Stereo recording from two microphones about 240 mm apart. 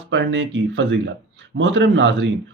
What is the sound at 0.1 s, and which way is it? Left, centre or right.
Speech, right.